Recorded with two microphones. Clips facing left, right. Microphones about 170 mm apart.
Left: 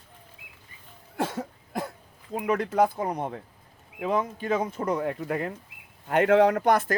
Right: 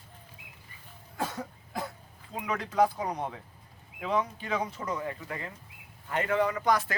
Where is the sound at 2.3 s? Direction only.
50° left (ahead or behind).